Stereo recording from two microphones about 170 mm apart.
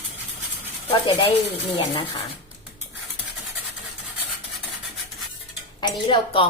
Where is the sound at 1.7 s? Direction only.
30° left (ahead or behind).